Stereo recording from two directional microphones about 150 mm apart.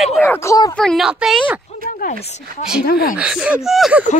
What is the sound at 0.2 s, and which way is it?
Speech, 15° left (ahead or behind).